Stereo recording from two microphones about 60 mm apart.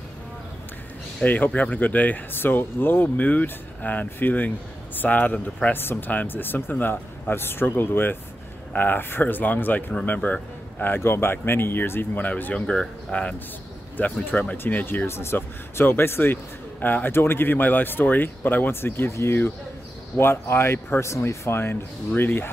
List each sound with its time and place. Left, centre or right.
1.2 s speech: left
5.7 s speech: left
12.3 s speech: left
12.6 s speech: centre; by 15.0 s left
15.0 s speech: left
19.0 s speech: left